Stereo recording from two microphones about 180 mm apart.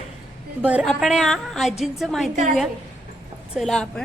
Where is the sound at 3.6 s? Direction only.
5° left (ahead or behind).